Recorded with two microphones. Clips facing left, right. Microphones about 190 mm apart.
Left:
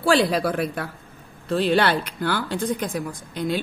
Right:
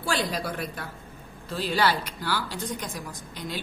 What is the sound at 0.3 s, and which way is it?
A woman's voice, 65° left (ahead or behind).